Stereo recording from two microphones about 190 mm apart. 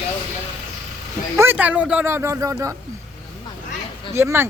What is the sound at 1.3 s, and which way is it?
Speech, 10° right (ahead or behind).